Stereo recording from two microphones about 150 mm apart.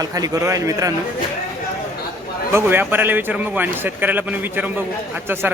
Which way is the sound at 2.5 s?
15° right (ahead or behind).